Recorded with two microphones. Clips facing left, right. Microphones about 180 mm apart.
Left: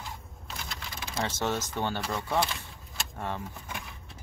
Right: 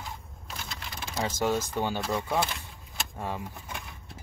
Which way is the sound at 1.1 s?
10° right (ahead or behind).